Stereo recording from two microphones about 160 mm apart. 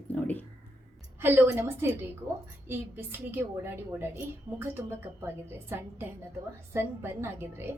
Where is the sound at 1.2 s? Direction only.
15° right (ahead or behind).